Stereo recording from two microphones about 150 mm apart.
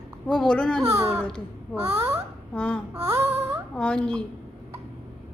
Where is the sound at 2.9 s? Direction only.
15° right (ahead or behind).